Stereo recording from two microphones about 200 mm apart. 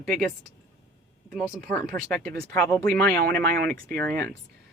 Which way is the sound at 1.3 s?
Centre (ahead or behind).